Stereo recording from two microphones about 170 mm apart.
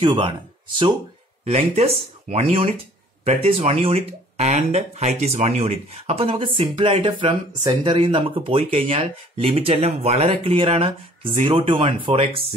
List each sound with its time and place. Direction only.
0.0 s speech: 30° right (ahead or behind)